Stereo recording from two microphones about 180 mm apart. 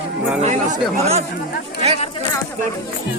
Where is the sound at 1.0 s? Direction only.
35° right (ahead or behind).